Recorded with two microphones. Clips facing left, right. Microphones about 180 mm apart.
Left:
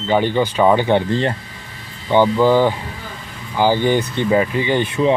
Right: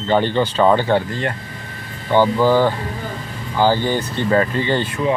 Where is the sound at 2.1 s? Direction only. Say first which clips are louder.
Left 1 dB; 15° left (ahead or behind).